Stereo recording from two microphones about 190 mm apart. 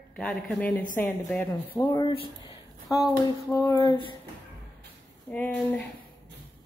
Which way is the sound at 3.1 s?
15° left (ahead or behind).